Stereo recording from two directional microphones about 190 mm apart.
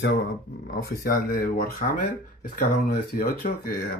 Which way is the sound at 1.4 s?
45° left (ahead or behind).